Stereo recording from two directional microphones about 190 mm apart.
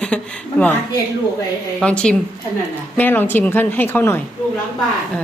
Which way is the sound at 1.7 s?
5° left (ahead or behind).